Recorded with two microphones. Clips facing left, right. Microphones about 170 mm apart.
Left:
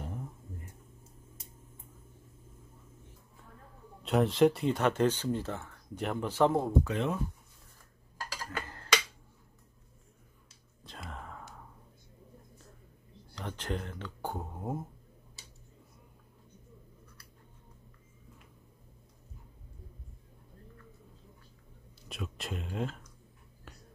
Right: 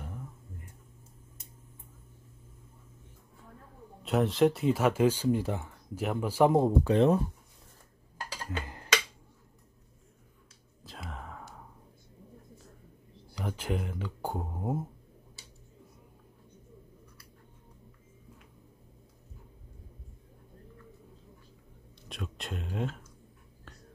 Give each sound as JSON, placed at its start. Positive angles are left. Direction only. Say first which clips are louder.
{"t": 4.0, "sound": "speech", "louder": "even", "side_deg": 0}
{"t": 6.6, "sound": "speech", "louder": "right 7 dB", "side_deg": -30}
{"t": 8.5, "sound": "a sound", "louder": "right 2 dB", "side_deg": -20}
{"t": 10.8, "sound": "a sound", "louder": "right 1 dB", "side_deg": 0}
{"t": 13.3, "sound": "speech", "louder": "right 3 dB", "side_deg": -10}
{"t": 22.0, "sound": "speech", "louder": "even", "side_deg": 0}